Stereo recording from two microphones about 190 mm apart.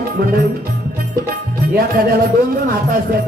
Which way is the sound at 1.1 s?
50° right (ahead or behind).